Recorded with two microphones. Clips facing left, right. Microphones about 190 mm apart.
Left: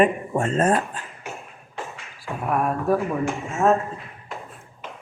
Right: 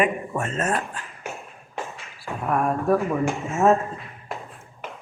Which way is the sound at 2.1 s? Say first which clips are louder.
Even; 5° left (ahead or behind).